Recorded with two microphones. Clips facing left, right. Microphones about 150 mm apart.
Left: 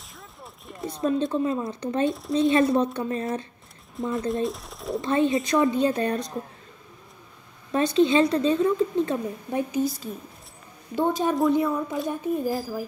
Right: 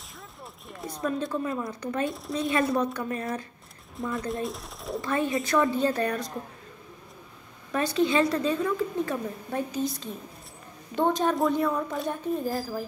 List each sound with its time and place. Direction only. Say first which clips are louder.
0.4 s a sound: left 4 dB; centre (ahead or behind)
1.0 s a woman's voice: left 5 dB; 25° left (ahead or behind)
4.3 s a woman's voice: left 5 dB; centre (ahead or behind)
5.0 s a woman's voice: left 5 dB; 25° left (ahead or behind)
7.7 s a woman's voice: left 4 dB; 20° left (ahead or behind)
11.0 s a woman's voice: left 1 dB; 10° left (ahead or behind)